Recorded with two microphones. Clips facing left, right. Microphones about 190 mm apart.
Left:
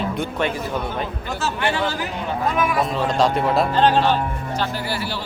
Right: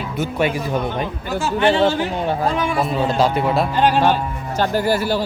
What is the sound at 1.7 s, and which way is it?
A man's voice, 25° right (ahead or behind).